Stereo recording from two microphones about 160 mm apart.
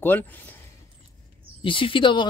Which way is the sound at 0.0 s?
10° left (ahead or behind).